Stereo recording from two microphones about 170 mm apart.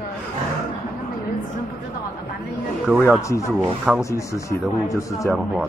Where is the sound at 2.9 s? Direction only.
10° right (ahead or behind).